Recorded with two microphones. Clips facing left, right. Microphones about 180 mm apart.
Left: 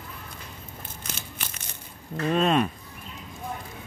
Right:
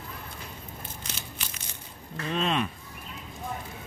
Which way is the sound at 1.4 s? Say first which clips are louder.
Left 2 dB; 55° left (ahead or behind).